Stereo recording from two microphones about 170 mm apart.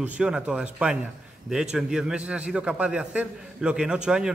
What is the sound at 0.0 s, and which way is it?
A man's voice, 5° right (ahead or behind).